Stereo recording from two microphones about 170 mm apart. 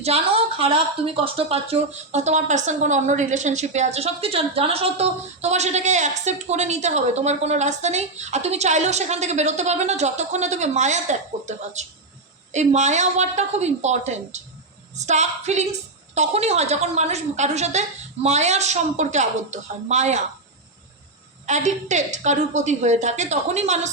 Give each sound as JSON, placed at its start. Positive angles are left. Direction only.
{"t": 0.0, "sound": "a woman's voice", "side_deg": -35}
{"t": 21.4, "sound": "a woman's voice", "side_deg": -45}